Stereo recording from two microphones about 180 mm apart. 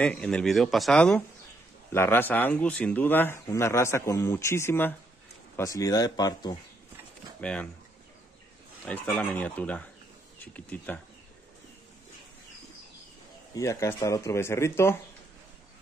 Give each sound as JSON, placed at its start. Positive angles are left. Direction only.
{"t": 0.0, "sound": "speech", "side_deg": 5}
{"t": 7.3, "sound": "speech", "side_deg": 5}
{"t": 8.8, "sound": "speech", "side_deg": 5}
{"t": 13.6, "sound": "speech", "side_deg": 15}